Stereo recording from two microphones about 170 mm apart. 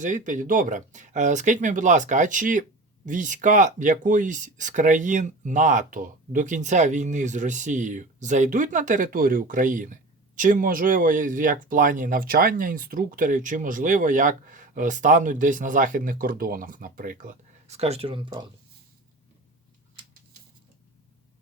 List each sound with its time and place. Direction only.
0.0 s speech: 50° right (ahead or behind); by 18.4 s 25° right (ahead or behind)